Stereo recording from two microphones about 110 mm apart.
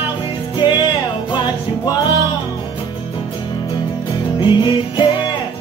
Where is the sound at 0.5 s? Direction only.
45° left (ahead or behind).